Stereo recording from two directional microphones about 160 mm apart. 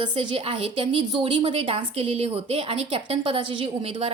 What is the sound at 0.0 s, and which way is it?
A woman's voice, 35° right (ahead or behind).